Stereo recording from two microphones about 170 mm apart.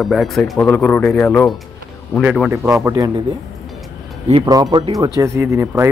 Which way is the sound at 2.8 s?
20° right (ahead or behind).